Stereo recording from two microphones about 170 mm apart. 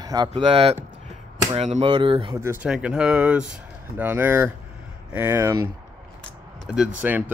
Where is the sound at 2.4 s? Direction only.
10° right (ahead or behind).